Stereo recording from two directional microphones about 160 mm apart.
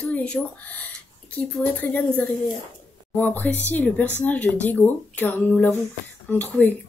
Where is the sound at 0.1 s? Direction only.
10° left (ahead or behind).